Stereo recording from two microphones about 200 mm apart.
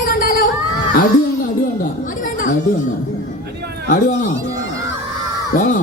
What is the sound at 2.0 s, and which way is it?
Chatter, 40° left (ahead or behind).